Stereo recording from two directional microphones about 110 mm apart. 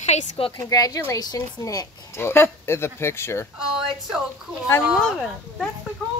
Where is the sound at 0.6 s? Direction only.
35° left (ahead or behind).